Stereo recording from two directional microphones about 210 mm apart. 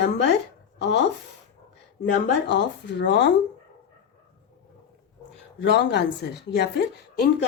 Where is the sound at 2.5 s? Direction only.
55° left (ahead or behind).